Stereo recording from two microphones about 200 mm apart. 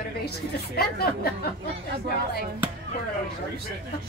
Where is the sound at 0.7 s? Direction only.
50° left (ahead or behind).